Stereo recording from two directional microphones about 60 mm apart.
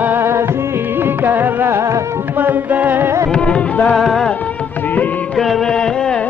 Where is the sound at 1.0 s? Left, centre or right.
Right.